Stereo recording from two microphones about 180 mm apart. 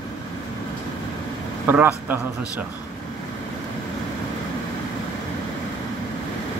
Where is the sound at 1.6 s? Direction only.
10° right (ahead or behind).